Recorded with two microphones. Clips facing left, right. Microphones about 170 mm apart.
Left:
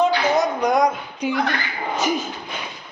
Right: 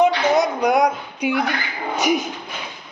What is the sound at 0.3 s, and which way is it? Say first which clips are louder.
Speech: right 1 dB; 10° right (ahead or behind).